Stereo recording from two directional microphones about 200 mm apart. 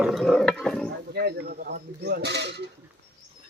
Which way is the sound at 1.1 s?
55° right (ahead or behind).